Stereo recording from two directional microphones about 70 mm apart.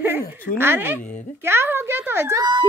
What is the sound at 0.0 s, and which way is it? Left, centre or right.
Speech, right.